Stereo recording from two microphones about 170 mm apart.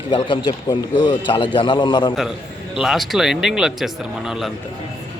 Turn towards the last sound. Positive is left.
turn(degrees=-5)  # may be behind; listen again after turning